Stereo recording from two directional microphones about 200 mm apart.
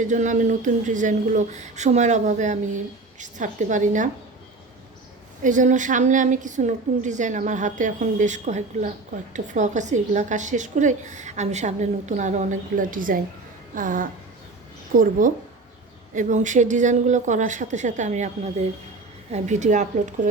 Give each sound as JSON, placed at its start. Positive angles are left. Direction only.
{"t": 0.1, "sound": "speech", "side_deg": -40}
{"t": 5.4, "sound": "speech", "side_deg": -40}
{"t": 13.7, "sound": "a sound", "side_deg": -40}
{"t": 16.1, "sound": "speech", "side_deg": -40}